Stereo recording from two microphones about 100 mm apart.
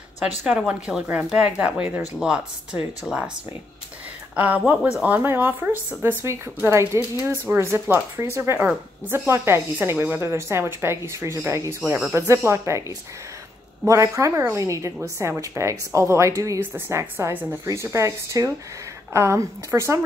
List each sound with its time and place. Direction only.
0.5 s a woman's voice: 10° right (ahead or behind)
4.4 s a woman's voice: 15° right (ahead or behind)
13.8 s a woman's voice: 30° right (ahead or behind)